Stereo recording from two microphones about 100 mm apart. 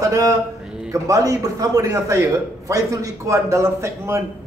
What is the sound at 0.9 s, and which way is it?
A man's voice, 35° right (ahead or behind).